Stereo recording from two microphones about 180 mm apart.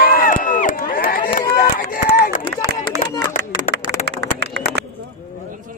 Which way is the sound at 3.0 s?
70° right (ahead or behind).